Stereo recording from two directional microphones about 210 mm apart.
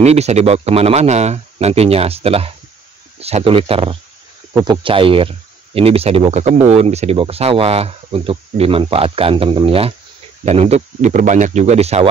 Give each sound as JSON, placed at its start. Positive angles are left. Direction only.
{"t": 0.0, "sound": "speech", "side_deg": -30}